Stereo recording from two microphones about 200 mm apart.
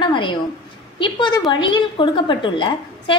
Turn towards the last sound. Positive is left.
turn(degrees=25)  # may be behind; listen again after turning